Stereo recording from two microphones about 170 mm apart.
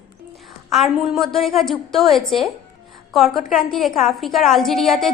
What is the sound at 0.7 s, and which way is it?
A woman's voice, centre (ahead or behind).